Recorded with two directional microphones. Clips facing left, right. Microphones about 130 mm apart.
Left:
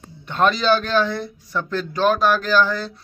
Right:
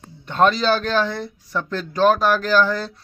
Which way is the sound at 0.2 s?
40° right (ahead or behind).